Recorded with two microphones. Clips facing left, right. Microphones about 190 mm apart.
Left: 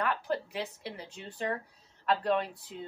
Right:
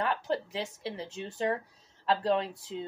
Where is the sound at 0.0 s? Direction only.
25° right (ahead or behind).